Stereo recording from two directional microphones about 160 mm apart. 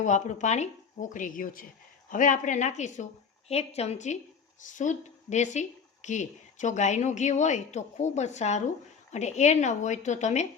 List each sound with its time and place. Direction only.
0.0 s a woman's voice: 50° left (ahead or behind)